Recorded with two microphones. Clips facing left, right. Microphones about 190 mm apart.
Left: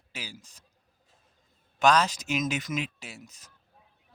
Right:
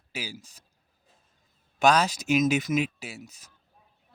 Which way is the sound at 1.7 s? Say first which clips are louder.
Right 1 dB; 10° right (ahead or behind).